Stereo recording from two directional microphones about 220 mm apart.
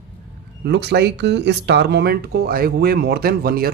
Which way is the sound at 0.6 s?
50° right (ahead or behind).